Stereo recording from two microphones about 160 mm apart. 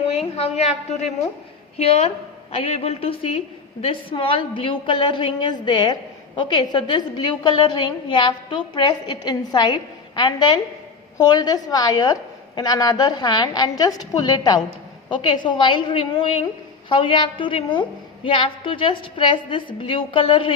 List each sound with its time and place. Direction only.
0.3 s a woman's voice: 40° left (ahead or behind)
1.8 s a woman's voice: 40° left (ahead or behind)